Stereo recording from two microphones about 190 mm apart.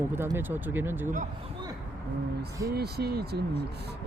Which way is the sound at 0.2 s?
10° right (ahead or behind).